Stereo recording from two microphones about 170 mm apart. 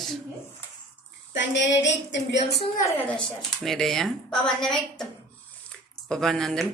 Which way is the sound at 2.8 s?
10° left (ahead or behind).